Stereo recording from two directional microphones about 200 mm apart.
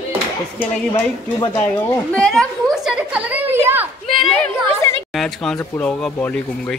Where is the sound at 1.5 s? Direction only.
15° left (ahead or behind).